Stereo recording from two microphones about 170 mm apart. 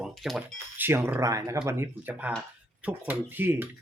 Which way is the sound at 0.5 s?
15° right (ahead or behind).